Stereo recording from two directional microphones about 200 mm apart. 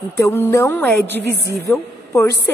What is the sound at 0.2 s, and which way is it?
A woman's voice, 15° left (ahead or behind).